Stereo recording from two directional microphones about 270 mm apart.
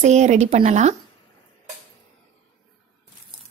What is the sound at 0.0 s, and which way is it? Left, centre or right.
Speech, right.